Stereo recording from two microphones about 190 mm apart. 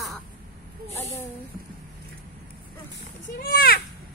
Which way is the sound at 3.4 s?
50° left (ahead or behind).